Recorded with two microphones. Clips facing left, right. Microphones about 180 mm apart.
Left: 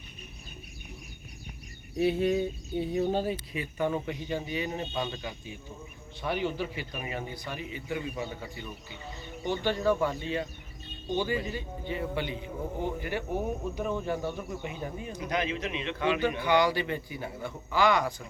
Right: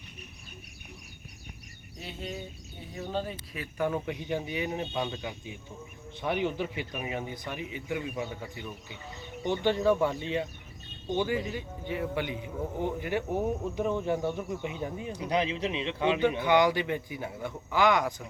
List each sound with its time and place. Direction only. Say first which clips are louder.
2.0 s speech: left 15 dB; 65° left (ahead or behind)
3.0 s speech: left 4 dB; 40° left (ahead or behind)
3.2 s speech: left 6 dB; centre (ahead or behind); by 8.3 s 15° right (ahead or behind)
9.4 s speech: right 2 dB; 20° right (ahead or behind)
15.3 s speech: right 2 dB; 30° right (ahead or behind)